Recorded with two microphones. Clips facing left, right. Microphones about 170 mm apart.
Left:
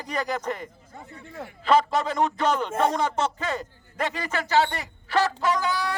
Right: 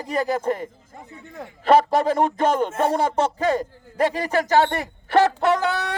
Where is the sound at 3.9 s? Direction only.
35° right (ahead or behind).